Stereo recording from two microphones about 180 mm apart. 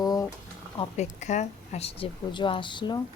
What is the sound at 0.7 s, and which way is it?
A woman's voice, 40° left (ahead or behind).